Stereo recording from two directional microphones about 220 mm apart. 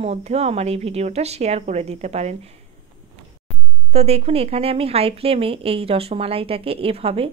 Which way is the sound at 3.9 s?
25° right (ahead or behind).